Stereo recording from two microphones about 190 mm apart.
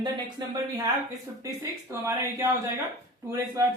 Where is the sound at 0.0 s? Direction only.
20° right (ahead or behind).